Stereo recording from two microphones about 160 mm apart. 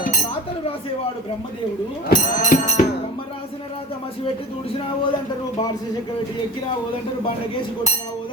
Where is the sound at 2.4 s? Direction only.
50° left (ahead or behind).